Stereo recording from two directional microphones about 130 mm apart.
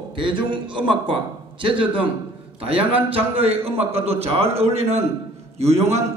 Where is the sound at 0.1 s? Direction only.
40° right (ahead or behind).